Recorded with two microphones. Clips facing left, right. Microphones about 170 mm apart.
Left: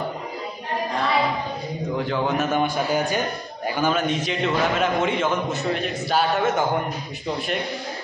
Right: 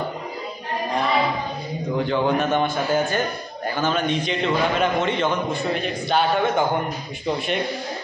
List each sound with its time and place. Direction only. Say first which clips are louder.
2.0 s a man's voice: right 3 dB; 5° left (ahead or behind)